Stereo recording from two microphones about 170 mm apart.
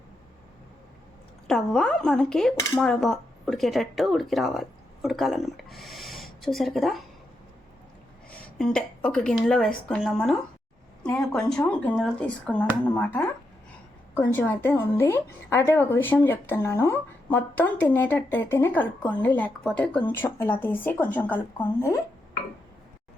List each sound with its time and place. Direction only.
1.5 s speech: 5° left (ahead or behind)
8.3 s a woman's voice: 5° left (ahead or behind)